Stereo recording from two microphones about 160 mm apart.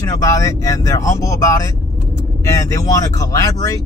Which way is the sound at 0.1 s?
20° left (ahead or behind).